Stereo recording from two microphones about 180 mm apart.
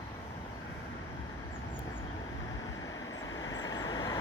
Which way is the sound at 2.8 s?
20° left (ahead or behind).